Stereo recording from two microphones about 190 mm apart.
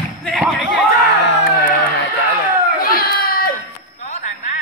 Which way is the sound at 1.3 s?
50° left (ahead or behind).